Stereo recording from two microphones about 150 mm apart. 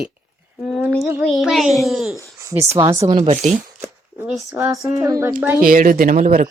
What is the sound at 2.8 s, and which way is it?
Speech, 25° right (ahead or behind).